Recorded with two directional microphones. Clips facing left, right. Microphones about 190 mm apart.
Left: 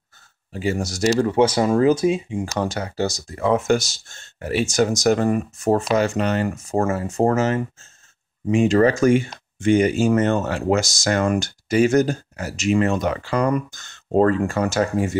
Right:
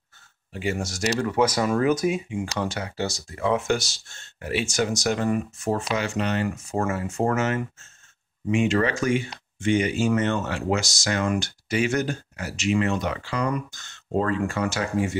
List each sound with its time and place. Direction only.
0.5 s speech: 35° left (ahead or behind)